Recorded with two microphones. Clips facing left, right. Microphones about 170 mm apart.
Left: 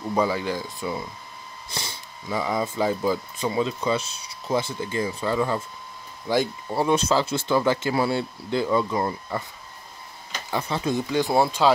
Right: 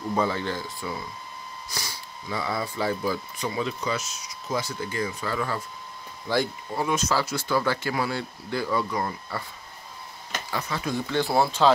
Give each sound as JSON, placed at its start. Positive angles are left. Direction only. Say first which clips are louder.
{"t": 0.1, "sound": "speech", "louder": "left 3 dB", "side_deg": 10}
{"t": 1.7, "sound": "speech", "louder": "left 3 dB", "side_deg": 25}
{"t": 6.7, "sound": "speech", "louder": "left 5 dB", "side_deg": 30}
{"t": 10.5, "sound": "speech", "louder": "left 4 dB", "side_deg": 25}